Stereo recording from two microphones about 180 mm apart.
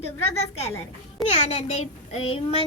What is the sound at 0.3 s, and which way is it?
A child's voice, 35° left (ahead or behind).